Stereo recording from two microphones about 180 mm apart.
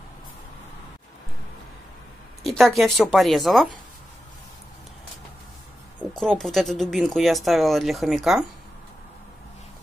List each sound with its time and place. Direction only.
2.4 s speech: centre (ahead or behind)
5.9 s speech: 5° left (ahead or behind)